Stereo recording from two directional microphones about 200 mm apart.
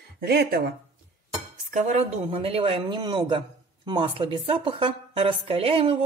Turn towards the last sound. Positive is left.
turn(degrees=-30)  # may be behind; listen again after turning